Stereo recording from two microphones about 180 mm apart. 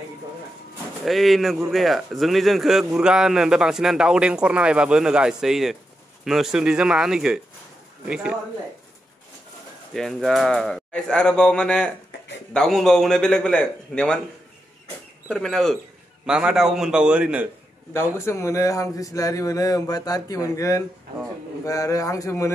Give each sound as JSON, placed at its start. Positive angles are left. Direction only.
{"t": 1.0, "sound": "speech", "side_deg": 0}
{"t": 9.9, "sound": "speech", "side_deg": 0}
{"t": 15.2, "sound": "speech", "side_deg": 5}
{"t": 18.1, "sound": "speech", "side_deg": 15}